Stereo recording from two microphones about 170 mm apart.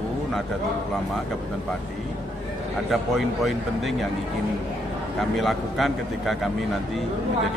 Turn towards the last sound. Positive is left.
turn(degrees=0)  # may be behind; listen again after turning